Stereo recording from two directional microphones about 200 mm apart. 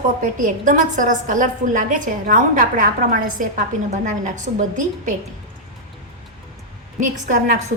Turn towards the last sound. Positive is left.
turn(degrees=-40)  # may be behind; listen again after turning